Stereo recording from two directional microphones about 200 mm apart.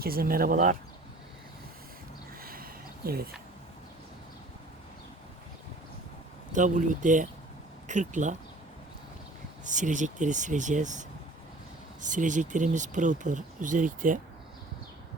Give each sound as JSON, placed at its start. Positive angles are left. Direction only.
{"t": 0.0, "sound": "speech", "side_deg": -50}
{"t": 2.4, "sound": "a sound", "side_deg": -45}
{"t": 6.5, "sound": "speech", "side_deg": -40}
{"t": 9.6, "sound": "speech", "side_deg": -40}
{"t": 12.0, "sound": "speech", "side_deg": -40}